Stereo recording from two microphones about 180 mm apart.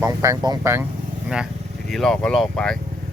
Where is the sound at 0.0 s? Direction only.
15° right (ahead or behind).